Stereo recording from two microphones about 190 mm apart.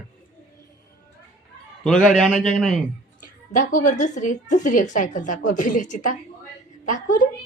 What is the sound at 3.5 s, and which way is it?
A woman's voice, 45° left (ahead or behind).